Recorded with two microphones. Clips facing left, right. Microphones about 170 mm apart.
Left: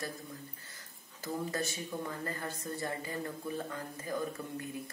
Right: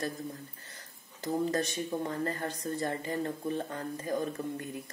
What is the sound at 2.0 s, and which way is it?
Speech, 35° right (ahead or behind).